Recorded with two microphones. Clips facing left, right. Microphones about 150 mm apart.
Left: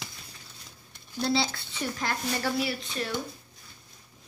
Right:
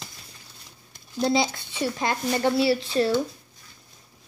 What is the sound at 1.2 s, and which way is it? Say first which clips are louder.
Speech: right 5 dB; 15° right (ahead or behind).